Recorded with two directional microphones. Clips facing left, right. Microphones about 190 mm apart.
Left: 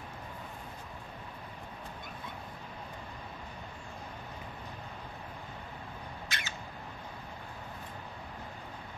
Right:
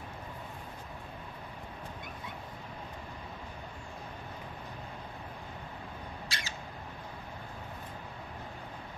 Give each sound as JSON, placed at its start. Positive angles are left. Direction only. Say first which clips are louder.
{"t": 6.2, "sound": "rodents", "louder": "left 1 dB", "side_deg": -30}